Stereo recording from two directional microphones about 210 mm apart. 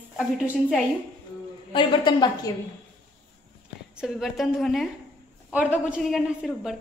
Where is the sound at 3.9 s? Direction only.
Centre (ahead or behind).